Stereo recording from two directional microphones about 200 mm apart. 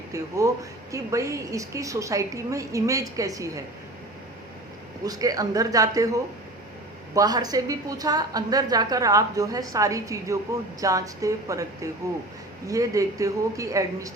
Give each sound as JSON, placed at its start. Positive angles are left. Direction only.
{"t": 0.1, "sound": "a woman's voice", "side_deg": -15}
{"t": 5.0, "sound": "a woman's voice", "side_deg": -20}
{"t": 7.1, "sound": "a woman's voice", "side_deg": -20}